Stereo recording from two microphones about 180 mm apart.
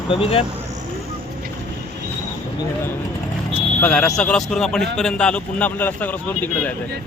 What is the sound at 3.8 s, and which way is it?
Speech, 5° left (ahead or behind).